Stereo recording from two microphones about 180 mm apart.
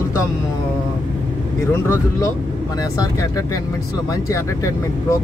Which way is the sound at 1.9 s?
20° left (ahead or behind).